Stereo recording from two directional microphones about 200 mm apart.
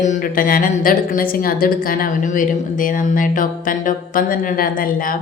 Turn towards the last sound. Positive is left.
turn(degrees=45)  # may be behind; listen again after turning